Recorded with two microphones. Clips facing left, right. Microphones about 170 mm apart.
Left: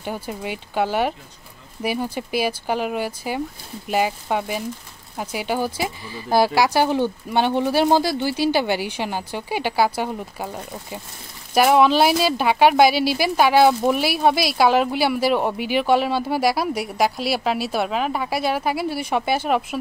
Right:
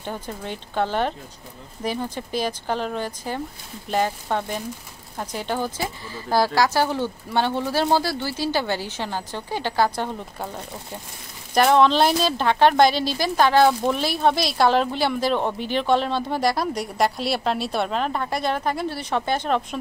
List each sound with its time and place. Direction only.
0.0 s speech: 10° left (ahead or behind)